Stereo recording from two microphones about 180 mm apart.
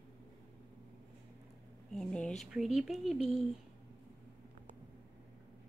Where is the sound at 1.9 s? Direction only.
5° left (ahead or behind).